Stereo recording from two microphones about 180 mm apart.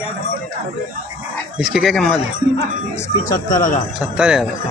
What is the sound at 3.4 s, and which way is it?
Speech, 50° left (ahead or behind).